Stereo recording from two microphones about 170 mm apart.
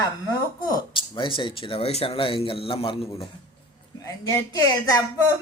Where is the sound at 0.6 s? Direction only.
30° left (ahead or behind).